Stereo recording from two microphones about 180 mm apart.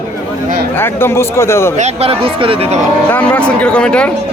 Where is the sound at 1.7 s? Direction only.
35° right (ahead or behind).